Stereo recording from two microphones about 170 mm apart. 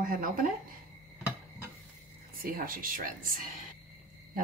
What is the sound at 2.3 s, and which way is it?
Speech, 55° right (ahead or behind).